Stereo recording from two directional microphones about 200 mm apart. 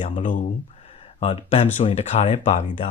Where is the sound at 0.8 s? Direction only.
30° left (ahead or behind).